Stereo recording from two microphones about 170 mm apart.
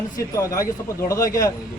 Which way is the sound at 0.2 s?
20° left (ahead or behind).